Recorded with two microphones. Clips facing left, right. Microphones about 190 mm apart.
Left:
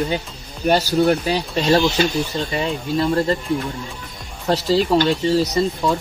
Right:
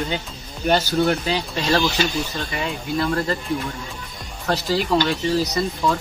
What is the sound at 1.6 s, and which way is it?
Speech, 25° left (ahead or behind).